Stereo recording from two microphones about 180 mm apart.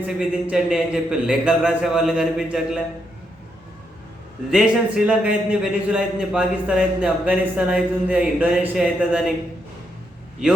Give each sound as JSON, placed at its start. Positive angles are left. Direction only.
{"t": 0.0, "sound": "a man's voice", "side_deg": -5}
{"t": 4.5, "sound": "a man's voice", "side_deg": -5}